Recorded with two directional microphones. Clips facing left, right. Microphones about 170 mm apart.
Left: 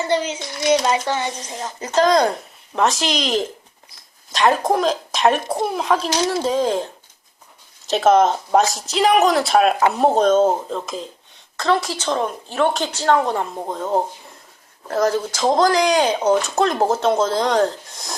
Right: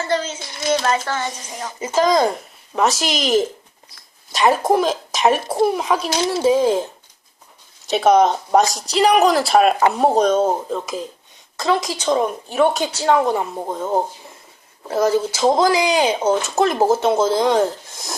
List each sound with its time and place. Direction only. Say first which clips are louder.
0.0 s a child's voice: left 1 dB; 15° left (ahead or behind)
1.5 s speech: right 1 dB; 5° right (ahead or behind)
7.9 s speech: right 1 dB; centre (ahead or behind)